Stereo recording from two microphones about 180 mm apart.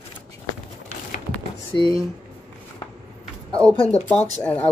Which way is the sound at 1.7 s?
25° left (ahead or behind).